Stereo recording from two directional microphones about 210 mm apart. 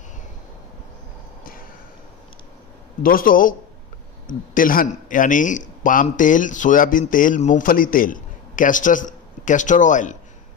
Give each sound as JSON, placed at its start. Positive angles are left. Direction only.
{"t": 3.0, "sound": "speech", "side_deg": 40}